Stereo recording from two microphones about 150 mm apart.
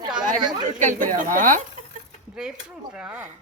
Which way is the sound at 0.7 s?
60° right (ahead or behind).